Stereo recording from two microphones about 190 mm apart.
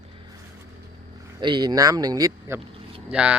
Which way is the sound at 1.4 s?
25° right (ahead or behind).